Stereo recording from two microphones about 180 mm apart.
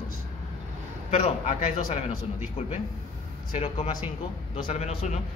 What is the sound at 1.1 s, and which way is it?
Speech, 35° left (ahead or behind).